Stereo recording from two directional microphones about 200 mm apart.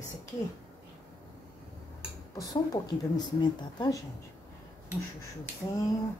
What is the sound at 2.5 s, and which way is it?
A woman's voice, 20° left (ahead or behind).